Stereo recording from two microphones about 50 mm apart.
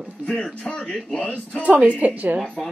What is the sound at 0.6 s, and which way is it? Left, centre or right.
Speech, centre.